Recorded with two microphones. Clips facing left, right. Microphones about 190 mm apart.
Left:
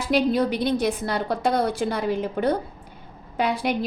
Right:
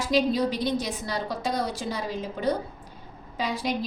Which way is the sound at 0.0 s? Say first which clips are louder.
Left 3 dB; 55° left (ahead or behind).